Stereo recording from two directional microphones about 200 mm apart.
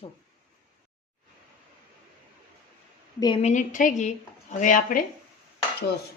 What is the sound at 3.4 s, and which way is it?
A woman's voice, 40° left (ahead or behind).